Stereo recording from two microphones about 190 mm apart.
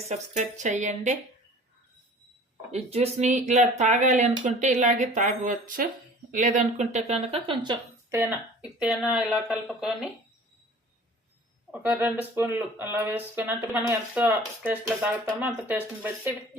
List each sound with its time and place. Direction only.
0.1 s speech: 40° right (ahead or behind)
2.7 s speech: 35° right (ahead or behind)
8.8 s speech: 5° right (ahead or behind)
11.7 s speech: 10° right (ahead or behind)